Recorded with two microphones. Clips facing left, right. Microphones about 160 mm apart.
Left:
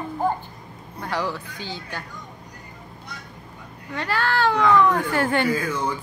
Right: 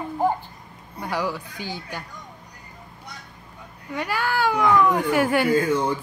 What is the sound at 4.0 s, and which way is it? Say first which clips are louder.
Speech: left 1 dB; 15° right (ahead or behind).